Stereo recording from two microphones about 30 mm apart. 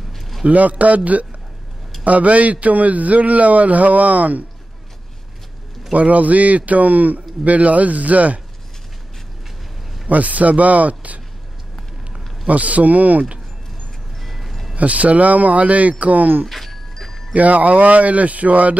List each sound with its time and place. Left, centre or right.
0.5 s a man's voice: right
5.9 s a man's voice: right
10.0 s a man's voice: right
12.4 s a man's voice: right
14.2 s music: centre
14.8 s a man's voice: right
16.4 s a sound: centre
17.3 s a man's voice: right